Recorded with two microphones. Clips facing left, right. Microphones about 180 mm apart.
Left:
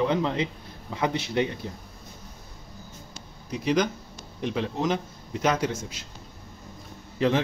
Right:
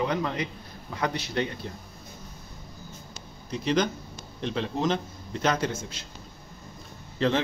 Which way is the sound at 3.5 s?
10° left (ahead or behind).